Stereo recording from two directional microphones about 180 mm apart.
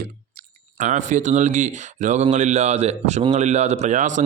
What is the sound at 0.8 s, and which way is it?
Speech, 40° right (ahead or behind).